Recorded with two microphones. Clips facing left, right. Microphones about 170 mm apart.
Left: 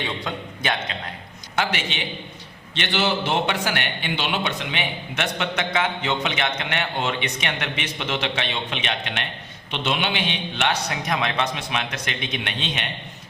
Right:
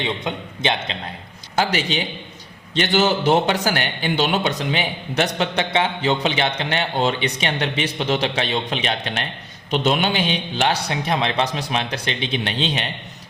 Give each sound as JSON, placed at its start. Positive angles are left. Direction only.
{"t": 0.0, "sound": "a man's voice", "side_deg": -20}
{"t": 1.5, "sound": "a man's voice", "side_deg": -35}